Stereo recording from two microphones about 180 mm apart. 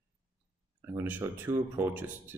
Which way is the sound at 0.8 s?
10° right (ahead or behind).